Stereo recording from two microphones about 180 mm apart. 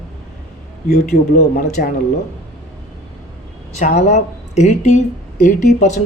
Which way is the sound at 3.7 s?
40° left (ahead or behind).